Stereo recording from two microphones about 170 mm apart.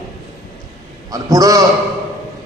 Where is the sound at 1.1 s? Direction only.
20° right (ahead or behind).